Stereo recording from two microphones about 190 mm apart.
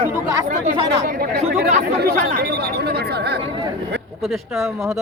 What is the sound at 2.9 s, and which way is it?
Speech, 60° right (ahead or behind).